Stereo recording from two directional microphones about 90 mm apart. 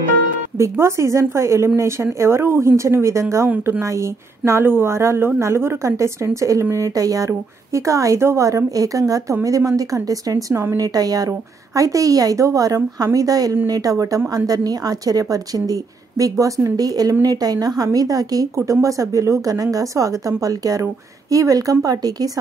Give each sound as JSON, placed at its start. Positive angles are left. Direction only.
{"t": 0.6, "sound": "a woman's voice", "side_deg": -30}